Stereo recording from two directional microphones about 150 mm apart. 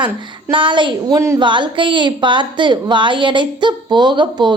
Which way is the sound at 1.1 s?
20° right (ahead or behind).